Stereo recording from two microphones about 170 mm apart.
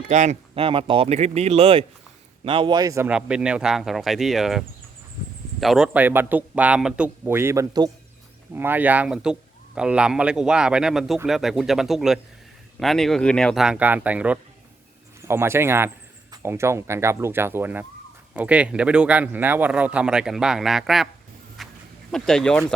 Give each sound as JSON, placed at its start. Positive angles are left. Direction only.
{"t": 0.1, "sound": "a man's voice", "side_deg": -45}
{"t": 3.1, "sound": "a man's voice", "side_deg": -5}
{"t": 21.6, "sound": "a sound", "side_deg": 0}
{"t": 22.1, "sound": "a man's voice", "side_deg": 5}